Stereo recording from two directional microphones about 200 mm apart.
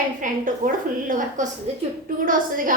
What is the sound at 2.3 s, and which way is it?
Speech, 45° right (ahead or behind).